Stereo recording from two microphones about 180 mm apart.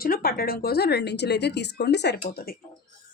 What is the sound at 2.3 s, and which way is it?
Speech, 55° left (ahead or behind).